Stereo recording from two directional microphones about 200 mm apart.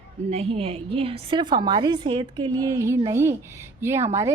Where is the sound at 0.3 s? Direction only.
30° right (ahead or behind).